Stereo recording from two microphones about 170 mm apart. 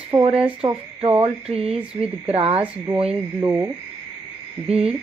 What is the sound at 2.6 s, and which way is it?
Speech, 10° right (ahead or behind).